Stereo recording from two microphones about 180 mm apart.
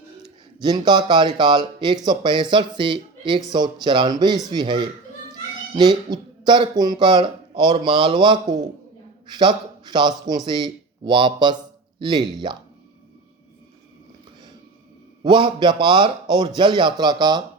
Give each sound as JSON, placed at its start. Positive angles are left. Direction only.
{"t": 0.6, "sound": "speech", "side_deg": -25}
{"t": 6.1, "sound": "a man's voice", "side_deg": -25}
{"t": 15.2, "sound": "speech", "side_deg": -25}